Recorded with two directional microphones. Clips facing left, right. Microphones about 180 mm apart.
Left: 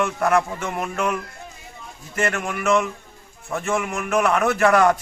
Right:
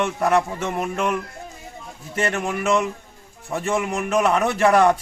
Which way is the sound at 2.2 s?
30° right (ahead or behind).